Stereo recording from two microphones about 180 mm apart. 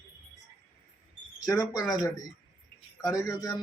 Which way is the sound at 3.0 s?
20° left (ahead or behind).